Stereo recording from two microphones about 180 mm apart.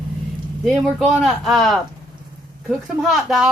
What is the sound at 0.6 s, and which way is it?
A woman's voice, centre (ahead or behind).